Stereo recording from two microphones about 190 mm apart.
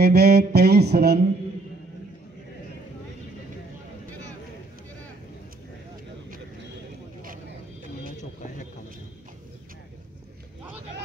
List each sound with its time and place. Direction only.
0.0 s music: 55° right (ahead or behind)